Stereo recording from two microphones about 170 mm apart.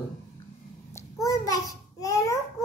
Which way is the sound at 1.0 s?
20° left (ahead or behind).